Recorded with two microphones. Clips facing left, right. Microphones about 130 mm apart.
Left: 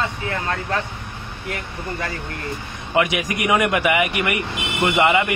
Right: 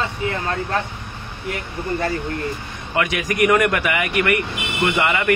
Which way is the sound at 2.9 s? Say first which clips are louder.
Left 3 dB; 20° left (ahead or behind).